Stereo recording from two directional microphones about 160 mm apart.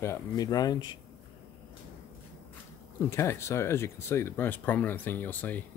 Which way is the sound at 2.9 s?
20° left (ahead or behind).